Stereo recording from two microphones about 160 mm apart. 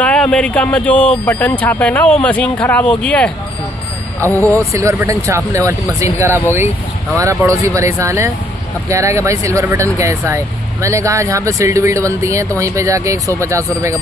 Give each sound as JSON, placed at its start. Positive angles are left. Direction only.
{"t": 0.0, "sound": "speech", "side_deg": 5}
{"t": 4.7, "sound": "speech", "side_deg": -20}